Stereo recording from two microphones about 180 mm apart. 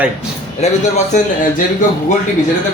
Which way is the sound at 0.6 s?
35° left (ahead or behind).